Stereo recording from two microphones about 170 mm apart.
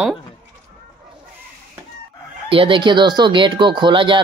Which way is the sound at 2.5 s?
30° right (ahead or behind).